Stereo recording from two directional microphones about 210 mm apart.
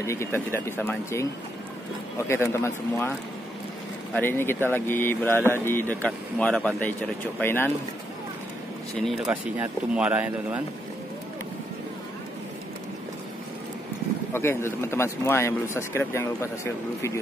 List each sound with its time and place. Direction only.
0.0 s speech: 15° left (ahead or behind)
8.9 s speech: centre (ahead or behind)
14.3 s speech: 10° left (ahead or behind)